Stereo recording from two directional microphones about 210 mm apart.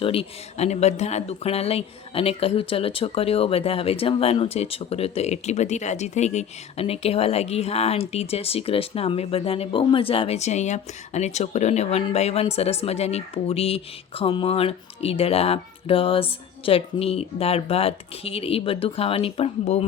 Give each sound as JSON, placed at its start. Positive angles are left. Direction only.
{"t": 0.0, "sound": "speech", "side_deg": 25}